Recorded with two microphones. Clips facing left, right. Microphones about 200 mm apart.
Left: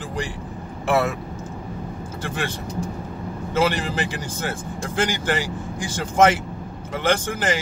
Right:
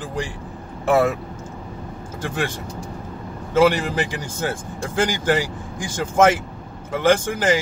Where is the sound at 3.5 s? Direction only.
10° right (ahead or behind).